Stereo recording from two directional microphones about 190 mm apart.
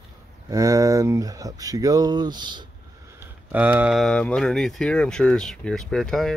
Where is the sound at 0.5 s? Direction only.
20° right (ahead or behind).